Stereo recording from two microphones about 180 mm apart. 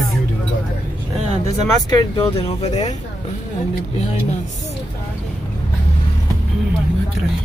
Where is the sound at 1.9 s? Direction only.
25° left (ahead or behind).